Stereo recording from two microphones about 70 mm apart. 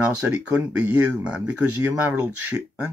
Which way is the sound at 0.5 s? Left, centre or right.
Centre.